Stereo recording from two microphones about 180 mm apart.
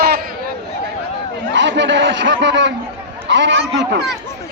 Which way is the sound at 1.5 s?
90° right.